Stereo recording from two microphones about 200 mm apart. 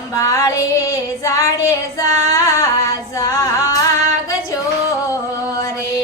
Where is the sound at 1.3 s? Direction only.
15° left (ahead or behind).